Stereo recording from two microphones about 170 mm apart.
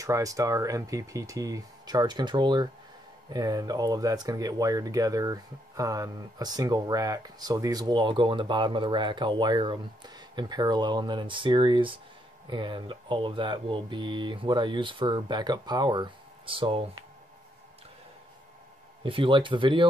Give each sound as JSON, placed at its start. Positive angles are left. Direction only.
{"t": 0.0, "sound": "speech", "side_deg": -20}
{"t": 19.0, "sound": "speech", "side_deg": -30}